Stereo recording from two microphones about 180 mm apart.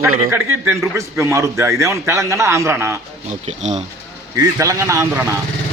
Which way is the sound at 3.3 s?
40° right (ahead or behind).